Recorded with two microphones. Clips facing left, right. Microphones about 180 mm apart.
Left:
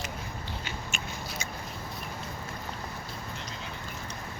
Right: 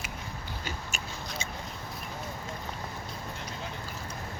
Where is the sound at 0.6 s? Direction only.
40° right (ahead or behind).